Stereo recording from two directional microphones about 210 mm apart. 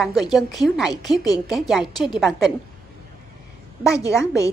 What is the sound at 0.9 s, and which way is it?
Speech, 20° left (ahead or behind).